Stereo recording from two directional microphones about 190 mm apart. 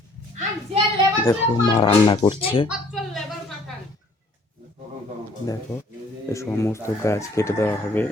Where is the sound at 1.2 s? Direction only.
25° left (ahead or behind).